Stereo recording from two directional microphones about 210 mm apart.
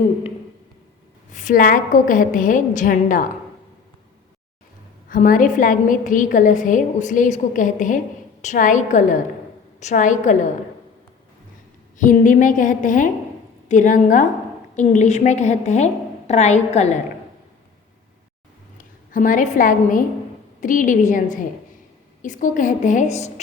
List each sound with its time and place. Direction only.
1.3 s a woman's voice: 35° left (ahead or behind)
5.0 s a woman's voice: 40° left (ahead or behind)
11.9 s a woman's voice: 40° left (ahead or behind)
18.8 s a woman's voice: 40° left (ahead or behind)